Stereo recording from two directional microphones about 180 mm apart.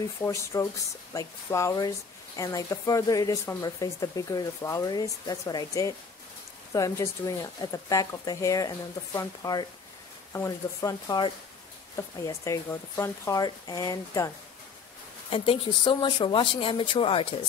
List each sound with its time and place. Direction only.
0.2 s speech: 15° left (ahead or behind)
15.2 s speech: 30° left (ahead or behind)